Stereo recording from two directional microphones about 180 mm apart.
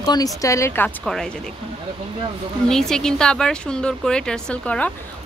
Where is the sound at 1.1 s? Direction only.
5° left (ahead or behind).